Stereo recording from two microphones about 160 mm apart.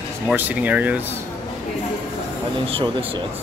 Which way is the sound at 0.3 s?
10° right (ahead or behind).